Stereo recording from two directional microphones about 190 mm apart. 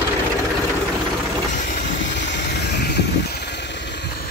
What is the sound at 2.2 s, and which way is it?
Vehicle, 65° left (ahead or behind).